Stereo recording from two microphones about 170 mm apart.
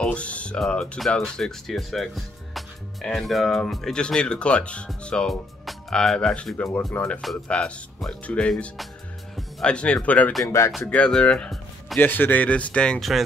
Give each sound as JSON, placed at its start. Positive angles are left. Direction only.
{"t": 0.0, "sound": "speech", "side_deg": 5}
{"t": 6.5, "sound": "speech", "side_deg": 15}
{"t": 10.7, "sound": "speech", "side_deg": 5}